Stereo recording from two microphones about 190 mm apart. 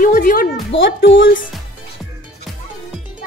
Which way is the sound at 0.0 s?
45° left (ahead or behind).